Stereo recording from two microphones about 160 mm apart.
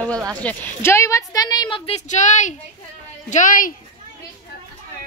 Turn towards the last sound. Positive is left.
turn(degrees=55)  # may be behind; listen again after turning